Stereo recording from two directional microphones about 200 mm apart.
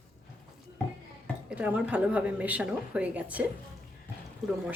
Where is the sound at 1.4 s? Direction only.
5° right (ahead or behind).